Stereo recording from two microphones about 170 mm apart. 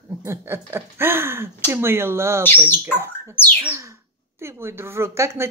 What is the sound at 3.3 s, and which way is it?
Bird, 10° left (ahead or behind).